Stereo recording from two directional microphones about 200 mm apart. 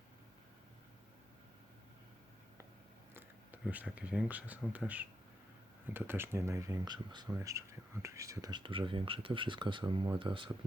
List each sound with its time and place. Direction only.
3.2 s speech: 10° right (ahead or behind); by 10.5 s 25° right (ahead or behind)